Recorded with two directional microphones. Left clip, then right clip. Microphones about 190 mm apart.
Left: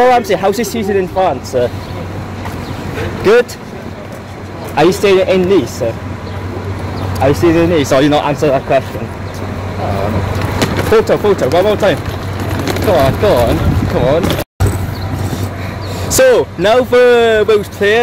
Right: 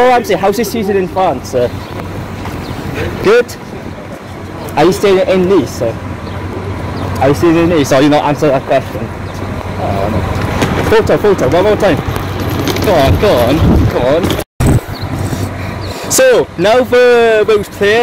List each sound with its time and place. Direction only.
0.0 s speech: 15° right (ahead or behind)
3.3 s speech: 10° right (ahead or behind)
4.7 s speech: 15° right (ahead or behind)
7.2 s speech: 20° right (ahead or behind)
10.9 s speech: 15° right (ahead or behind)
16.1 s speech: 5° right (ahead or behind)